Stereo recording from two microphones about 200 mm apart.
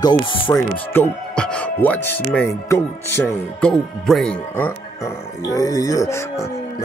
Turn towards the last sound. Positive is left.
turn(degrees=15)  # may be behind; listen again after turning